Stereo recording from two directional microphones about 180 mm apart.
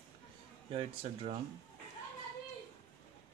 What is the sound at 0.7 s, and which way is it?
Speech, 30° right (ahead or behind).